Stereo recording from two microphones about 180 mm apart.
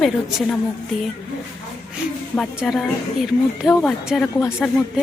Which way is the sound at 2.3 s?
Centre (ahead or behind).